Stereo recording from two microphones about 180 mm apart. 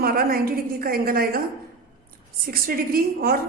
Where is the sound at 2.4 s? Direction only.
55° right (ahead or behind).